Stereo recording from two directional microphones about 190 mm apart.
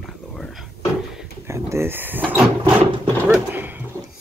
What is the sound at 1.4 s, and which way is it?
Drawer open or close, 15° right (ahead or behind).